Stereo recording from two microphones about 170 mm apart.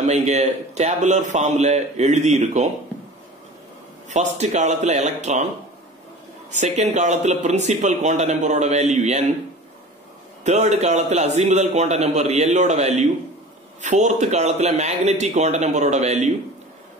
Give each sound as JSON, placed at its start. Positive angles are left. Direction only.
{"t": 0.0, "sound": "speech", "side_deg": -40}
{"t": 4.1, "sound": "speech", "side_deg": -45}
{"t": 6.5, "sound": "speech", "side_deg": -45}
{"t": 10.4, "sound": "a man's voice", "side_deg": -40}